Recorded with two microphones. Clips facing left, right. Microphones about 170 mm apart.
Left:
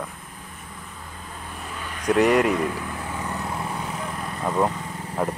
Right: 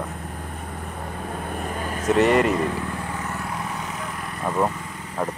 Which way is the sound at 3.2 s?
15° left (ahead or behind).